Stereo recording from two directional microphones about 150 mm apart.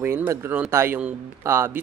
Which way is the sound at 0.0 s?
15° right (ahead or behind).